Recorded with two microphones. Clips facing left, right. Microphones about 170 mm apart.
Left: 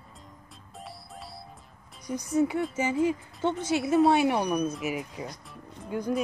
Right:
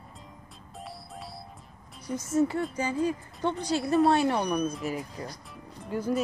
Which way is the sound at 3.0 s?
20° left (ahead or behind).